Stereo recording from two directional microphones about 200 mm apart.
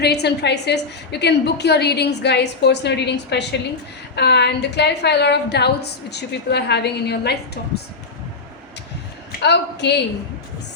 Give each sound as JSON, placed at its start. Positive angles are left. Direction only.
{"t": 0.0, "sound": "a woman's voice", "side_deg": 55}
{"t": 9.4, "sound": "a woman's voice", "side_deg": 55}